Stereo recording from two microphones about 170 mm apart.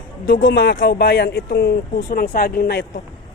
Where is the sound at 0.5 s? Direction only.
75° left (ahead or behind).